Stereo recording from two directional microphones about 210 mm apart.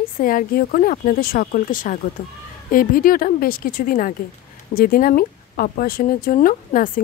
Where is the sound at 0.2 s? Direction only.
40° left (ahead or behind).